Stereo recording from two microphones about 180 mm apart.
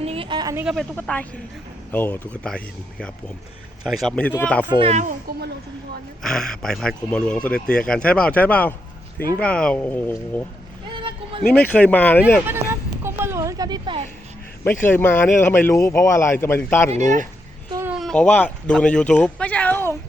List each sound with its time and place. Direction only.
0.0 s a sound: 30° right (ahead or behind)
0.5 s speech: 5° right (ahead or behind)
0.9 s a man's voice: 10° left (ahead or behind)
4.7 s a child's voice: 35° right (ahead or behind)
6.2 s a man's voice: 5° left (ahead or behind)
10.9 s a sound: 30° right (ahead or behind)
11.6 s a man's voice: 10° left (ahead or behind)
12.5 s a sound: 15° right (ahead or behind)
14.6 s a man's voice: 10° left (ahead or behind)
17.8 s speech: centre (ahead or behind)